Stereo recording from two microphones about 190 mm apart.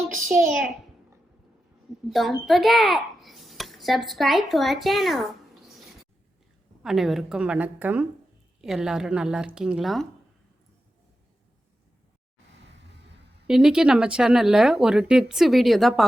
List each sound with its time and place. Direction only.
0.3 s speech: 5° right (ahead or behind)
2.0 s a child's voice: centre (ahead or behind)
6.8 s speech: centre (ahead or behind)
12.7 s a sound: 65° right (ahead or behind)
13.5 s speech: 5° right (ahead or behind)